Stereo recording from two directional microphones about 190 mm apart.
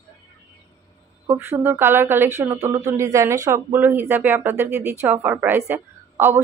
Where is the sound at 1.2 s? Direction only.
10° right (ahead or behind).